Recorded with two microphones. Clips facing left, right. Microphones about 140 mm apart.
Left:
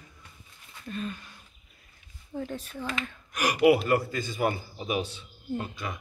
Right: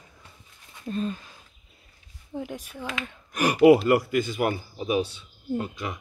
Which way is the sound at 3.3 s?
35° right (ahead or behind).